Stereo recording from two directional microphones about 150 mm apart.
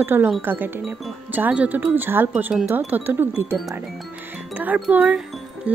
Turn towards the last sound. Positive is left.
turn(degrees=-10)  # may be behind; listen again after turning